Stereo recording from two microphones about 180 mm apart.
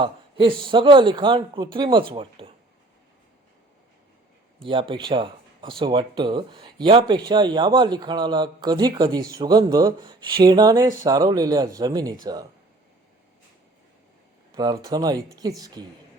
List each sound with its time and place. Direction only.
0.0 s a sound: 30° right (ahead or behind)
0.6 s speech: 25° right (ahead or behind)
4.6 s speech: 30° right (ahead or behind)
14.5 s speech: 20° right (ahead or behind)